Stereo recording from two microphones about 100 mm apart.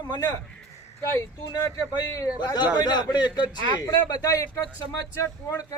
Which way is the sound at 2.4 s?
45° left (ahead or behind).